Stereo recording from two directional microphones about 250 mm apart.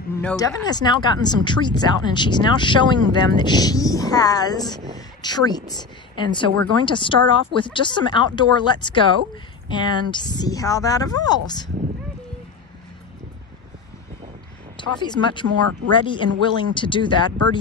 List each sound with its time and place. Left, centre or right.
0.2 s speech: centre
0.7 s speech: centre
14.8 s speech: centre